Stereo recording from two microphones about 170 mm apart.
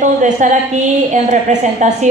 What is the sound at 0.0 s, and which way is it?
A woman's voice, 45° right (ahead or behind).